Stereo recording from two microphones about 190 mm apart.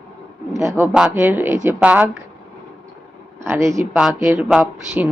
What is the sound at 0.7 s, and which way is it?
Speech, 10° right (ahead or behind).